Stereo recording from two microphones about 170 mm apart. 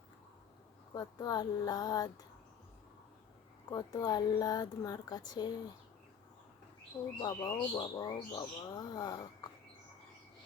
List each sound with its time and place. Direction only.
0.9 s speech: 25° left (ahead or behind)
3.7 s speech: 20° left (ahead or behind)
7.2 s speech: 15° left (ahead or behind)